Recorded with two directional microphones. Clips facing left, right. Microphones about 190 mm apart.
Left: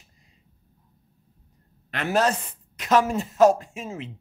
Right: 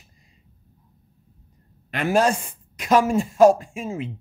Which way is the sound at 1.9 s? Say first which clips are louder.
Right 3 dB; 10° right (ahead or behind).